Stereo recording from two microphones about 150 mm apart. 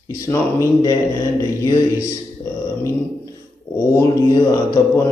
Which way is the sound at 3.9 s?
20° left (ahead or behind).